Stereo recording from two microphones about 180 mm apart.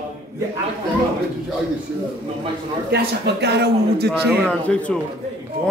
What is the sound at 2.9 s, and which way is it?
A man's voice, 65° right (ahead or behind).